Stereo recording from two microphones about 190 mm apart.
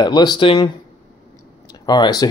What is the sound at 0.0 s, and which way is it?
Speech, 20° left (ahead or behind).